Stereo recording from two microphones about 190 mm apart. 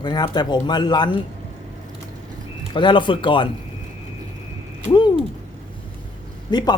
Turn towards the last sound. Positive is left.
turn(degrees=20)  # may be behind; listen again after turning